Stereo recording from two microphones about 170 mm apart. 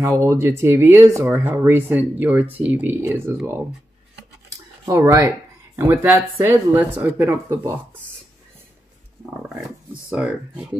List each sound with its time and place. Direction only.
0.0 s speech: 15° right (ahead or behind)
4.8 s speech: 20° right (ahead or behind)
10.1 s speech: 5° right (ahead or behind)